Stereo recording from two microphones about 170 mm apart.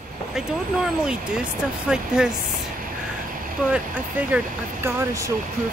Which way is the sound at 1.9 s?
5° right (ahead or behind).